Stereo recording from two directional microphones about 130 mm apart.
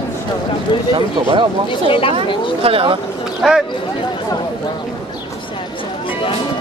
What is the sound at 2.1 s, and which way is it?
Speech, 45° right (ahead or behind).